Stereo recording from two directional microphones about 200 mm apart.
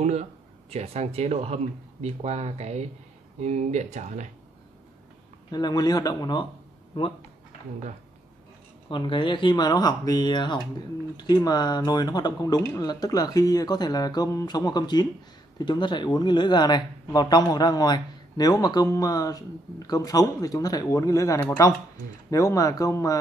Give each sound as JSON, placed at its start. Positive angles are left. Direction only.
{"t": 0.0, "sound": "speech", "side_deg": -35}
{"t": 5.5, "sound": "speech", "side_deg": 20}
{"t": 8.8, "sound": "speech", "side_deg": 25}